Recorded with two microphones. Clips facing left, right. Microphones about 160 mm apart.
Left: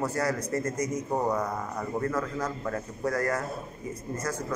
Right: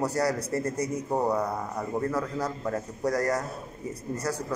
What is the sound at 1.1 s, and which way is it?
Speech, 10° right (ahead or behind).